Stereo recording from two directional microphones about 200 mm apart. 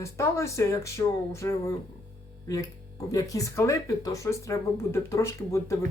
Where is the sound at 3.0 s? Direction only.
15° left (ahead or behind).